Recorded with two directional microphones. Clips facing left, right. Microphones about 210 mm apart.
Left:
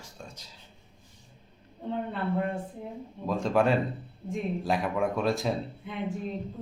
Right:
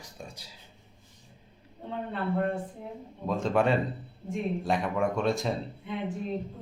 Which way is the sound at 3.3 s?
Centre (ahead or behind).